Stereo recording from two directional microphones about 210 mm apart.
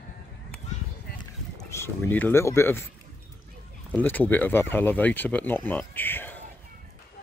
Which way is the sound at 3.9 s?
10° left (ahead or behind).